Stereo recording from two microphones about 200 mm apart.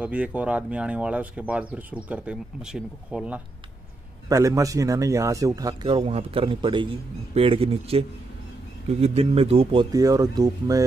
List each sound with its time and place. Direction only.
0.0 s a man's voice: 5° right (ahead or behind)
4.3 s a man's voice: 15° right (ahead or behind)